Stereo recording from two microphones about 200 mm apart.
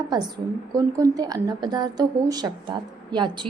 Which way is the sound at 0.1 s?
20° right (ahead or behind).